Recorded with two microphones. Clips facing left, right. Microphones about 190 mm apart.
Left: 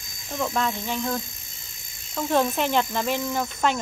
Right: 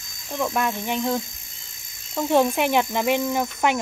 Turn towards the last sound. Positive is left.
turn(degrees=-15)  # may be behind; listen again after turning